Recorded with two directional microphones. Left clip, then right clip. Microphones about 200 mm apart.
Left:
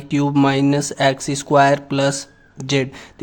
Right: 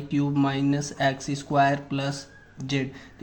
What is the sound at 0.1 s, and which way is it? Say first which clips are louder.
Speech: left 9 dB; 45° left (ahead or behind).